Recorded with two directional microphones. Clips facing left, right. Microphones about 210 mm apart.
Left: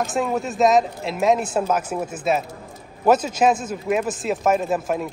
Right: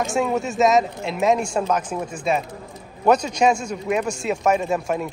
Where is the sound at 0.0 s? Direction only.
Centre (ahead or behind).